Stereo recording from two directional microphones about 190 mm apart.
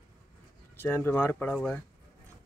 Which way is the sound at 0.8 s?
10° left (ahead or behind).